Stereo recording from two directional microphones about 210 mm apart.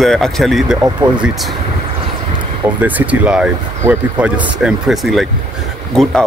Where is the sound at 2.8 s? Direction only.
5° right (ahead or behind).